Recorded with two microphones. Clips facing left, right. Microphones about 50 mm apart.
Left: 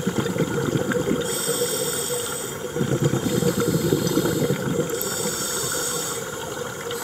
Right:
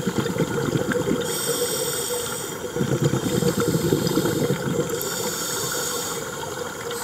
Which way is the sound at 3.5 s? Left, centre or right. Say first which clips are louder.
Even; centre.